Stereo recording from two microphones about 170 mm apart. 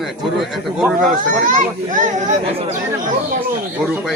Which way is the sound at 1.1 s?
50° right (ahead or behind).